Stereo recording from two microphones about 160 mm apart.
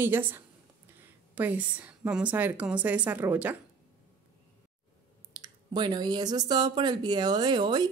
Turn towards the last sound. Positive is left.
turn(degrees=-25)  # may be behind; listen again after turning